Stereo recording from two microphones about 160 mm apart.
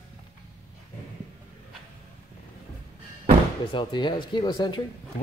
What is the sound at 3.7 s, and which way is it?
Speech, 30° left (ahead or behind).